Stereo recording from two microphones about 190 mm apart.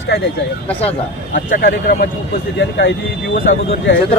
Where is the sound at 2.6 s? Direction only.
70° left (ahead or behind).